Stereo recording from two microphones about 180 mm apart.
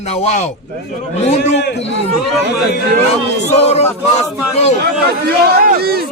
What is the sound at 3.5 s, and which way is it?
Music, 35° left (ahead or behind).